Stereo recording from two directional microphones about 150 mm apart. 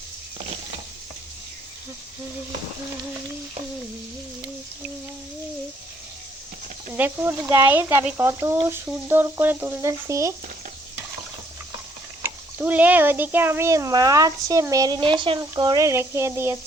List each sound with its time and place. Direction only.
6.9 s speech: 15° right (ahead or behind)
12.2 s speech: 10° right (ahead or behind)